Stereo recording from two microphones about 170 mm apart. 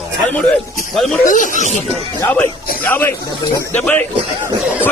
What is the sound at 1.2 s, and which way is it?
Speech, 50° left (ahead or behind).